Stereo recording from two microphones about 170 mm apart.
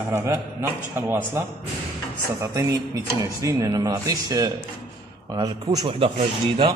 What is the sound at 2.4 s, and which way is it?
Speech, 20° right (ahead or behind).